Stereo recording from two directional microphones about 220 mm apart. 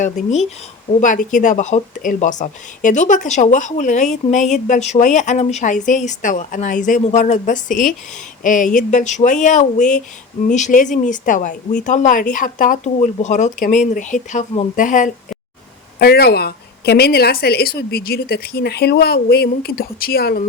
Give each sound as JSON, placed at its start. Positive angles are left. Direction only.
{"t": 0.0, "sound": "a woman's voice", "side_deg": 35}